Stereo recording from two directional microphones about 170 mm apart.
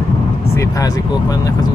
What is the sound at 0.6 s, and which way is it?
Speech, 20° left (ahead or behind).